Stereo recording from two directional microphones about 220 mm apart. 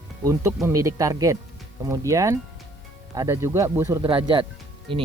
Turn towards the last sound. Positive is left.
turn(degrees=-25)  # may be behind; listen again after turning